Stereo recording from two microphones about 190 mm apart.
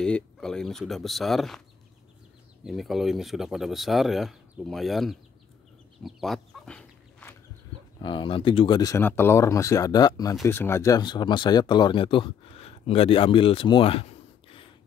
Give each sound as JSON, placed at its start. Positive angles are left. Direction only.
{"t": 0.0, "sound": "speech", "side_deg": 5}
{"t": 2.6, "sound": "speech", "side_deg": 0}
{"t": 6.0, "sound": "chicken", "side_deg": 0}
{"t": 8.0, "sound": "speech", "side_deg": 25}